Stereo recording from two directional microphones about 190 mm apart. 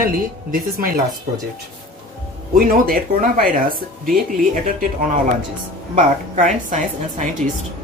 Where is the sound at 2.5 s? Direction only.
50° right (ahead or behind).